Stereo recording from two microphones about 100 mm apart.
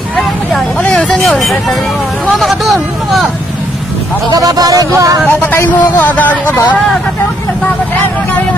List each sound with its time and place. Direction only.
0.5 s speech: 5° left (ahead or behind)
4.3 s speech: 40° right (ahead or behind)
5.3 s speech: 20° left (ahead or behind)